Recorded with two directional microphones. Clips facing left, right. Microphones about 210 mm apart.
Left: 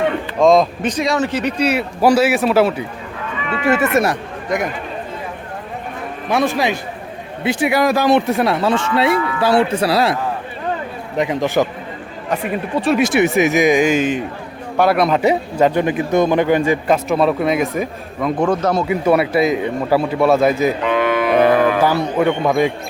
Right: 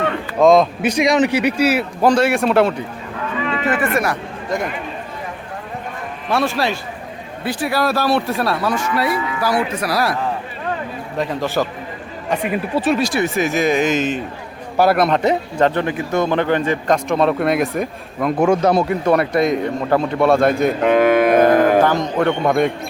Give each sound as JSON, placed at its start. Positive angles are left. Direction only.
{"t": 0.3, "sound": "speech", "side_deg": 0}
{"t": 2.0, "sound": "a man's voice", "side_deg": 5}
{"t": 3.7, "sound": "speech", "side_deg": 25}
{"t": 6.2, "sound": "speech", "side_deg": 15}
{"t": 11.2, "sound": "speech", "side_deg": 20}
{"t": 12.3, "sound": "a man's voice", "side_deg": -5}
{"t": 13.0, "sound": "speech", "side_deg": 20}
{"t": 14.8, "sound": "a man's voice", "side_deg": 0}
{"t": 18.9, "sound": "a man's voice", "side_deg": 5}
{"t": 20.8, "sound": "music", "side_deg": -45}
{"t": 22.0, "sound": "speech", "side_deg": 10}